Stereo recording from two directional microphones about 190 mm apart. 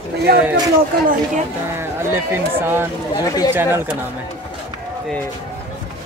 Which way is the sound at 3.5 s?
10° right (ahead or behind).